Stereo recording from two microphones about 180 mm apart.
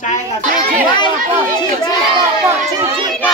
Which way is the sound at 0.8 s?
25° left (ahead or behind).